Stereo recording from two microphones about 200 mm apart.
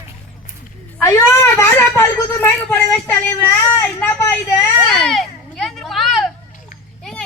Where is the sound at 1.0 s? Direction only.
15° left (ahead or behind).